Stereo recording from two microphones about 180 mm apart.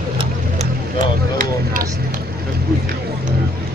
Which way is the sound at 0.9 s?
45° right (ahead or behind).